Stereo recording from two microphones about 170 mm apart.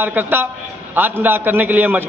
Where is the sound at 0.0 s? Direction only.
10° right (ahead or behind).